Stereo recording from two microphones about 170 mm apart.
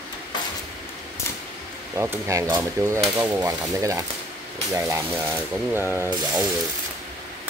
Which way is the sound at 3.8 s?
20° right (ahead or behind).